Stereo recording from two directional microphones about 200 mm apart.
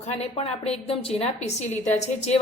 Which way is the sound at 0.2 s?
30° left (ahead or behind).